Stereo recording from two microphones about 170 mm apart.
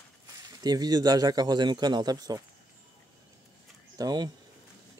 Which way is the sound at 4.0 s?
25° right (ahead or behind).